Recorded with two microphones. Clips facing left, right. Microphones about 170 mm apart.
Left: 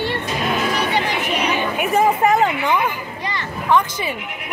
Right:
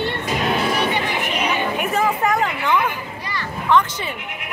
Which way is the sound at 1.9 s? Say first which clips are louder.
Left 5 dB; 20° left (ahead or behind).